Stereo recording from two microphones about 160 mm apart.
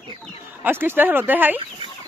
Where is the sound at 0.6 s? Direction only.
15° right (ahead or behind).